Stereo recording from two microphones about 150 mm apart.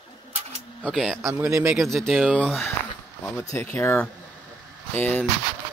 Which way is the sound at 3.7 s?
15° left (ahead or behind).